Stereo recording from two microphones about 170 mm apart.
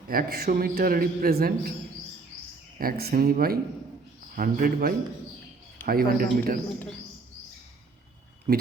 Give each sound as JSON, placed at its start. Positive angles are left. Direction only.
{"t": 0.1, "sound": "a man's voice", "side_deg": -60}
{"t": 2.7, "sound": "a man's voice", "side_deg": -60}